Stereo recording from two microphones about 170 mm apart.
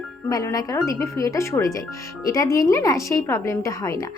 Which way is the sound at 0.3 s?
20° left (ahead or behind).